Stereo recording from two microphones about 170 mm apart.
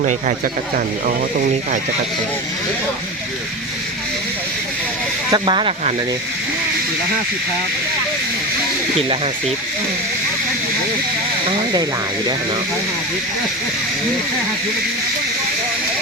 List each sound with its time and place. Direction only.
5.3 s speech: 30° right (ahead or behind)
9.0 s speech: 35° right (ahead or behind)